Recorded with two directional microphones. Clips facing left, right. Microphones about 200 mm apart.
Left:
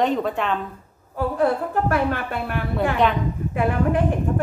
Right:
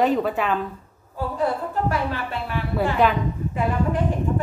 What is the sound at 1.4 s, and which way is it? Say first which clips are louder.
A woman's voice: left 2 dB; 55° left (ahead or behind).